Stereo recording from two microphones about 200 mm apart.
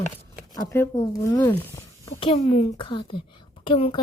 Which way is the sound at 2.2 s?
30° left (ahead or behind).